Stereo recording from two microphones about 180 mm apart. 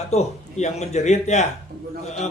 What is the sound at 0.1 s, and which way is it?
Speech, 40° left (ahead or behind).